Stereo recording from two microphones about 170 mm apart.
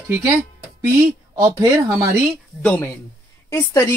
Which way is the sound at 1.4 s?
15° right (ahead or behind).